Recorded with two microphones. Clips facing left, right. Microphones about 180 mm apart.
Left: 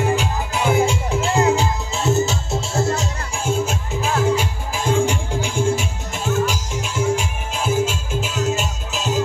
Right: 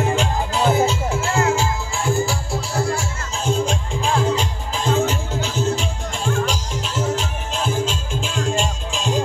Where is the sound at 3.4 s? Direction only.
5° left (ahead or behind).